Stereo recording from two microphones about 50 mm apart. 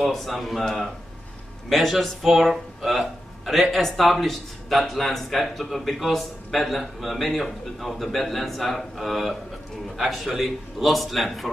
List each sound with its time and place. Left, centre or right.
0.0 s speech: centre